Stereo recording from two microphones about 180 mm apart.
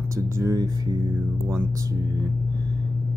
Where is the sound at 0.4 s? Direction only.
15° right (ahead or behind).